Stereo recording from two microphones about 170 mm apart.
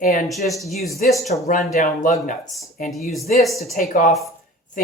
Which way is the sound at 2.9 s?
Centre (ahead or behind).